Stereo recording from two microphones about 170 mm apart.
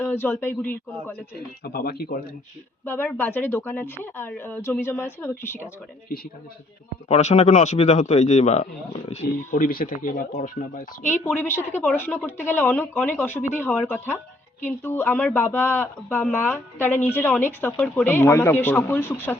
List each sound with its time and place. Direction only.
0.0 s speech: 10° left (ahead or behind)
1.6 s speech: 60° left (ahead or behind)
2.8 s speech: 10° left (ahead or behind)
7.1 s speech: 40° left (ahead or behind)
9.6 s speech: 55° left (ahead or behind)
11.1 s speech: 10° left (ahead or behind)